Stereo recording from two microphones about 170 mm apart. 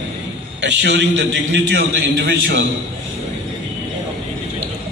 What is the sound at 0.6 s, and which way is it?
A man's voice, 90° right.